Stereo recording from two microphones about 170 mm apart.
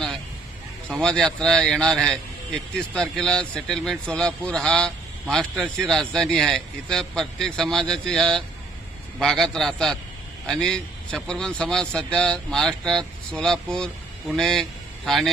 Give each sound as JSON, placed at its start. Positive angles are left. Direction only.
{"t": 0.9, "sound": "a man's voice", "side_deg": 5}